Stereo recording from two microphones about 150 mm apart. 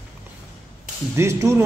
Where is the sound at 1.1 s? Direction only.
20° right (ahead or behind).